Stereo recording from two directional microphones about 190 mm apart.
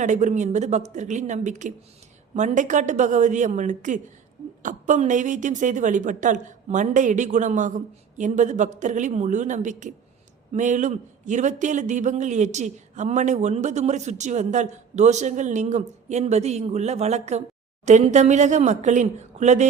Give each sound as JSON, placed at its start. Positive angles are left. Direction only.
{"t": 0.0, "sound": "speech", "side_deg": -40}